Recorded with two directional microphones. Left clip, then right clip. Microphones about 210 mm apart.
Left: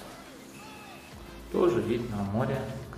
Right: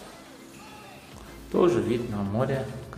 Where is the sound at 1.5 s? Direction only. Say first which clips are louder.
Right 3 dB; 25° right (ahead or behind).